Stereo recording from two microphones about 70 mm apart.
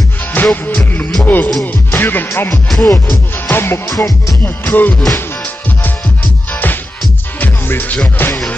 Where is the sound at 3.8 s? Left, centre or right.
Left.